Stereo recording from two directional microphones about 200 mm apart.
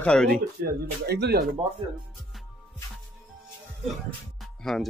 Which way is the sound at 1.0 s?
55° right (ahead or behind).